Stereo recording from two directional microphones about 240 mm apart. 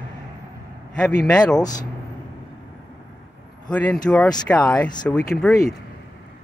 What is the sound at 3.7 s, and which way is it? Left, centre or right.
Speech, centre.